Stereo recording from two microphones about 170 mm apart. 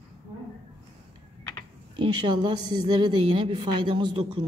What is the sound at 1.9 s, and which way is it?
A woman's voice, 30° right (ahead or behind).